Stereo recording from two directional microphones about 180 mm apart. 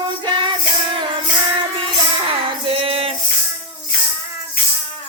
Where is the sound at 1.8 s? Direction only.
30° right (ahead or behind).